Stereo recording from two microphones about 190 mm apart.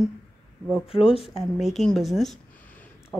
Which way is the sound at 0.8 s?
30° left (ahead or behind).